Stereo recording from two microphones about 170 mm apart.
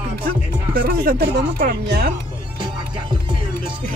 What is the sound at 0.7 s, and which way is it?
Speech, 60° right (ahead or behind).